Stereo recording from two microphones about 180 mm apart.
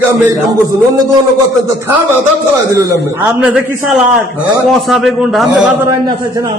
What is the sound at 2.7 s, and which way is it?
A man's voice, 10° right (ahead or behind).